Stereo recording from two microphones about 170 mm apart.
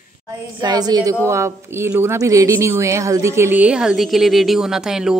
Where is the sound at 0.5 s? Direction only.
25° right (ahead or behind).